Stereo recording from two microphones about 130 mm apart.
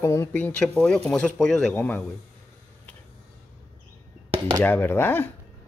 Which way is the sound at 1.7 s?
15° left (ahead or behind).